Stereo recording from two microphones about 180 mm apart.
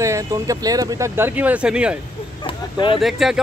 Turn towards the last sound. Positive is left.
turn(degrees=0)  # may be behind; listen again after turning